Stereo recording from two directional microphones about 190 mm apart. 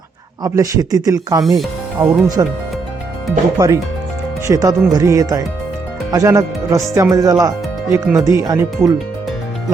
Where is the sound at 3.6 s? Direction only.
15° right (ahead or behind).